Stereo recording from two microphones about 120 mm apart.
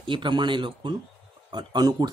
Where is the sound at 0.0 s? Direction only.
40° right (ahead or behind).